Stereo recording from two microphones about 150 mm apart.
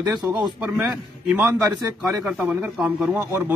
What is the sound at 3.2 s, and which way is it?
Speech, 20° right (ahead or behind).